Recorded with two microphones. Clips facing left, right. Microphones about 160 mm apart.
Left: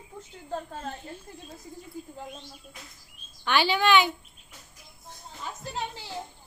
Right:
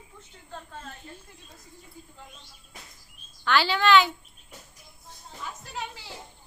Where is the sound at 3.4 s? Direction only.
15° left (ahead or behind).